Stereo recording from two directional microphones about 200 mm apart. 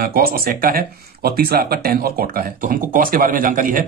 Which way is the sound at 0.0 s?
50° right (ahead or behind).